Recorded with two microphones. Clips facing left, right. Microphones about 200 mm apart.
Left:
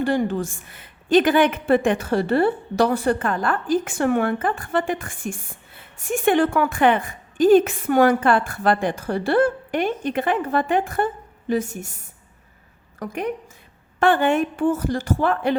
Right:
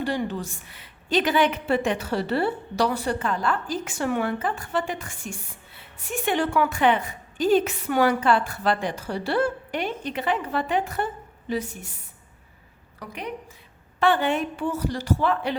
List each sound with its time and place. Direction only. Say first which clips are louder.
0.0 s a woman's voice: left 6 dB; 50° left (ahead or behind)
13.0 s a woman's voice: left 7 dB; 50° left (ahead or behind)